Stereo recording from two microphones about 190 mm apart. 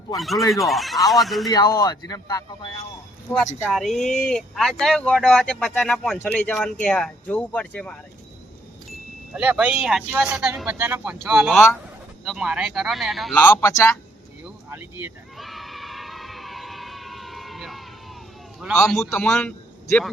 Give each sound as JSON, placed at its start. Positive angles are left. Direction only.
{"t": 0.2, "sound": "speech", "side_deg": 0}
{"t": 1.5, "sound": "speech", "side_deg": 20}
{"t": 3.6, "sound": "speech", "side_deg": 0}
{"t": 9.3, "sound": "speech", "side_deg": -5}
{"t": 13.3, "sound": "a man's voice", "side_deg": 15}
{"t": 14.7, "sound": "a sound", "side_deg": -10}
{"t": 18.6, "sound": "speech", "side_deg": 0}